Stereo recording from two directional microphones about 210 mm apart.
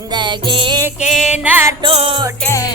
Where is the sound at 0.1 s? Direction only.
20° right (ahead or behind).